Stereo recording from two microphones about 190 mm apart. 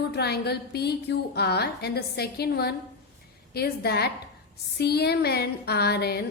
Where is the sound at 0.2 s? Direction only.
60° left (ahead or behind).